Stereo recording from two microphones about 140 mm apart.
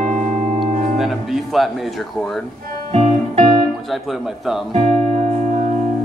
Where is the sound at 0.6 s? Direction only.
Centre (ahead or behind).